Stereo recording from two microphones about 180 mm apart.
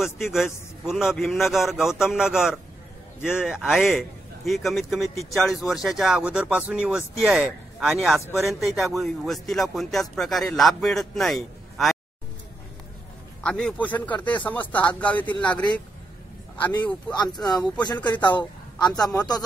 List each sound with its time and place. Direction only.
0.0 s a man's voice: centre (ahead or behind)
13.4 s speech: 5° left (ahead or behind)
17.1 s speech: 25° left (ahead or behind)